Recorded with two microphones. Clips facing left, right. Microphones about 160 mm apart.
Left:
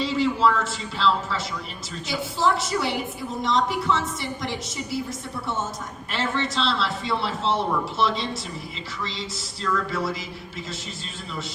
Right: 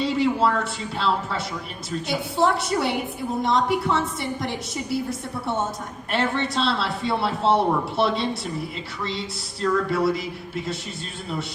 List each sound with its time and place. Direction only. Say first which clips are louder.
0.0 s a man's voice: right 1 dB; 55° right (ahead or behind)
6.1 s a man's voice: right 3 dB; 55° right (ahead or behind)